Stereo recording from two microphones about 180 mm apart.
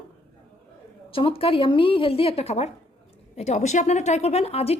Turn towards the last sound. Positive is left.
turn(degrees=35)  # may be behind; listen again after turning